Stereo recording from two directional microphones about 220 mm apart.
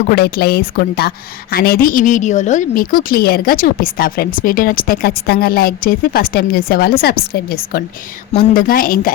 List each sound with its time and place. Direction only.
0.1 s a woman's voice: 45° left (ahead or behind)